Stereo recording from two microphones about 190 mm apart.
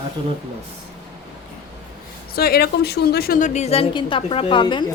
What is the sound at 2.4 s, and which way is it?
A woman's voice, 55° left (ahead or behind).